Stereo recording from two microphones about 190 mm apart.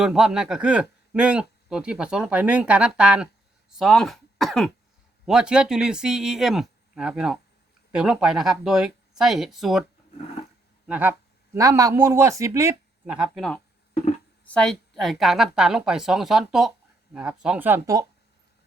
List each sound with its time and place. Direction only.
0.0 s a man's voice: 5° right (ahead or behind)
10.8 s speech: 5° right (ahead or behind)
13.1 s a man's voice: centre (ahead or behind)